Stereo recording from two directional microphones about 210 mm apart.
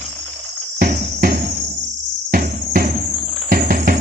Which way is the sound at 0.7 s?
45° right (ahead or behind).